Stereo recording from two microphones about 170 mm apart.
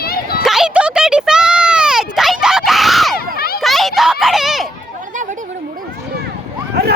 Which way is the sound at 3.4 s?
65° left (ahead or behind).